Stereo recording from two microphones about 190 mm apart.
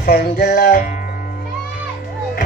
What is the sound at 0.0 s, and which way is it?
Music, 55° left (ahead or behind).